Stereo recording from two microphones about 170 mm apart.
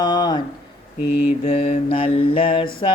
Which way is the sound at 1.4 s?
35° left (ahead or behind).